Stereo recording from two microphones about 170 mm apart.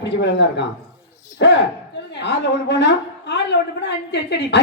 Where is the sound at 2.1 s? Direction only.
90° left.